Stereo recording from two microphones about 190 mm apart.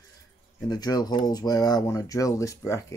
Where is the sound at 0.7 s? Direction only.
20° left (ahead or behind).